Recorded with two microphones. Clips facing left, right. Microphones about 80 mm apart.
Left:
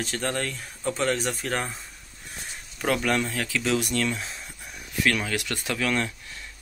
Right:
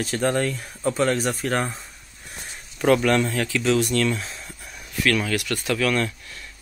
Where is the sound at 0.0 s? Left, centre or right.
Centre.